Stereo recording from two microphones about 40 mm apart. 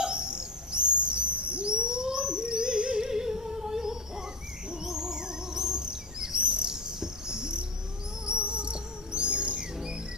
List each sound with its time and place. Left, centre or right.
0.0 s owl: right
4.8 s bird vocalization: centre
8.3 s music: right